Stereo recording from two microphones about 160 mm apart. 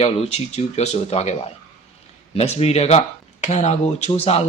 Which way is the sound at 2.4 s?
40° left (ahead or behind).